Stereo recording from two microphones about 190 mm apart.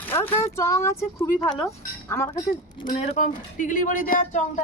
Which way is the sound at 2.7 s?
35° left (ahead or behind).